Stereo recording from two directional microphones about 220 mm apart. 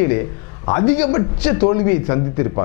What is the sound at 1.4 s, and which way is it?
Speech, 10° left (ahead or behind).